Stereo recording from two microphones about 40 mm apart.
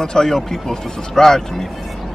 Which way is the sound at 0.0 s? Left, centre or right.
Centre.